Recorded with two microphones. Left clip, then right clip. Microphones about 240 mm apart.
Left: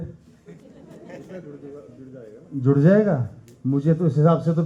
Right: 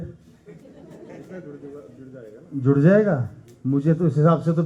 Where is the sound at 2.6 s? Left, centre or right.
Centre.